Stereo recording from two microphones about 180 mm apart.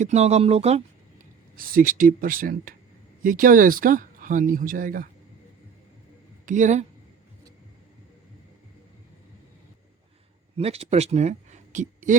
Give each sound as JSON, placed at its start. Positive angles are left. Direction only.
{"t": 0.0, "sound": "speech", "side_deg": -40}
{"t": 1.5, "sound": "speech", "side_deg": -50}
{"t": 6.4, "sound": "speech", "side_deg": -45}
{"t": 10.6, "sound": "speech", "side_deg": -35}